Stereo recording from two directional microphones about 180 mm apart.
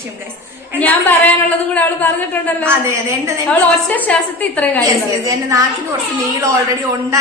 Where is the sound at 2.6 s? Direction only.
15° right (ahead or behind).